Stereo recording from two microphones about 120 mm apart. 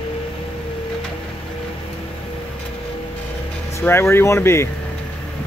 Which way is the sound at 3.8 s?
20° left (ahead or behind).